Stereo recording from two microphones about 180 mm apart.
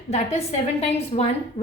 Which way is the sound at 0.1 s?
35° left (ahead or behind).